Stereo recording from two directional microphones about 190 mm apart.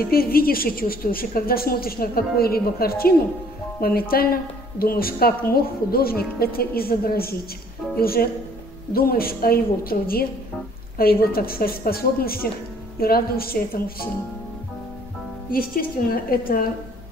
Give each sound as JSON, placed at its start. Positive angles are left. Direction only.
{"t": 0.0, "sound": "a woman's voice", "side_deg": 50}
{"t": 15.5, "sound": "a woman's voice", "side_deg": 50}